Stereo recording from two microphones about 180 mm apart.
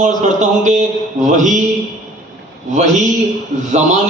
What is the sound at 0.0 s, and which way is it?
A man's voice, 40° right (ahead or behind).